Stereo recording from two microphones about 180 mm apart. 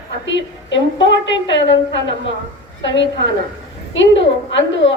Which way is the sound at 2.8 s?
85° left.